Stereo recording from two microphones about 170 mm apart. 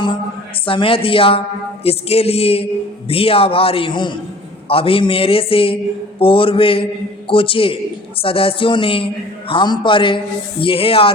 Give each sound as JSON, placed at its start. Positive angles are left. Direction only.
{"t": 0.6, "sound": "a man's voice", "side_deg": 30}